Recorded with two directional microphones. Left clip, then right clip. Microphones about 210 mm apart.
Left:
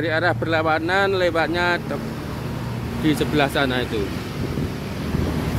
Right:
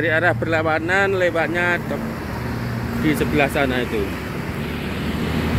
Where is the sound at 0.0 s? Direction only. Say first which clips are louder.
Right 3 dB; 10° left (ahead or behind).